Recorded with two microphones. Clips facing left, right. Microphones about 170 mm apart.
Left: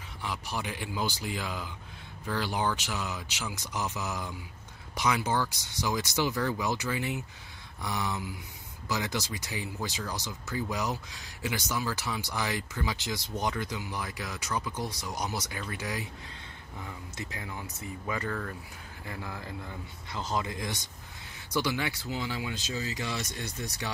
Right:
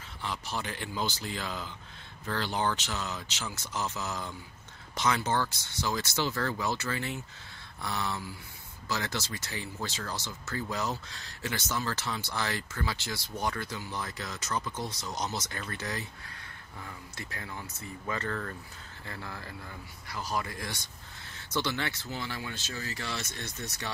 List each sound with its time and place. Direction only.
0.2 s speech: 10° left (ahead or behind)